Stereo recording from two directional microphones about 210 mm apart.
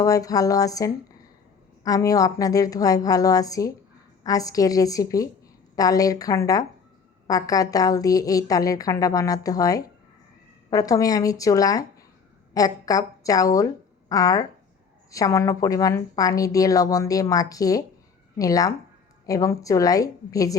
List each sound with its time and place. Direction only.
0.0 s a woman's voice: 15° left (ahead or behind)